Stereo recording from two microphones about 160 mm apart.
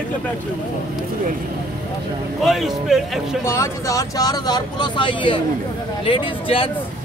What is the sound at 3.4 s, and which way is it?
Speech, 15° left (ahead or behind).